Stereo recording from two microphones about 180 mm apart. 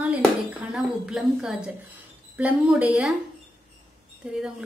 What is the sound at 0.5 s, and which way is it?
A woman's voice, 5° right (ahead or behind).